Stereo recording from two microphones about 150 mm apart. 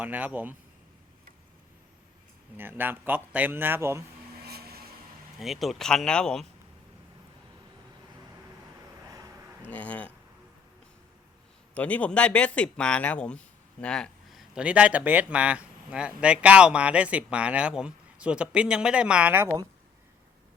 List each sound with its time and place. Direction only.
0.0 s speech: 10° right (ahead or behind)
2.6 s speech: 15° right (ahead or behind)
4.4 s vehicle: 90° right
5.4 s speech: centre (ahead or behind)
9.0 s a sound: 25° right (ahead or behind)
9.6 s speech: 10° left (ahead or behind)
11.7 s speech: 10° left (ahead or behind); by 19.6 s 15° right (ahead or behind)